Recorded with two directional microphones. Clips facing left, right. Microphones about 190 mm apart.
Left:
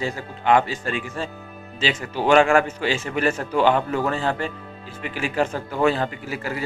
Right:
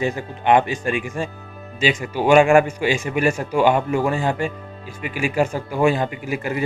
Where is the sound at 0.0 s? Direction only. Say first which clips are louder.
Right 3 dB; 20° right (ahead or behind).